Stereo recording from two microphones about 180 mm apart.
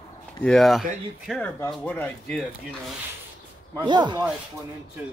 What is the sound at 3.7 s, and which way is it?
Speech, 25° right (ahead or behind).